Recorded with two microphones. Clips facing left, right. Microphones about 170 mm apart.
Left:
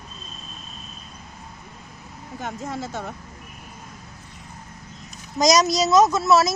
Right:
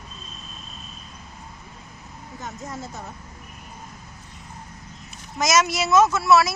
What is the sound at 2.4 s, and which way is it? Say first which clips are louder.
Speech: left 4 dB; 90° left.